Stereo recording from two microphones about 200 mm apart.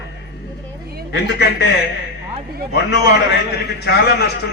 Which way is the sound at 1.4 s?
55° left (ahead or behind).